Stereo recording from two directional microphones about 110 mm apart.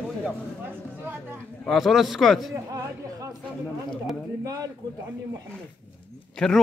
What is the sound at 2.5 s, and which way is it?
Speech, 35° right (ahead or behind).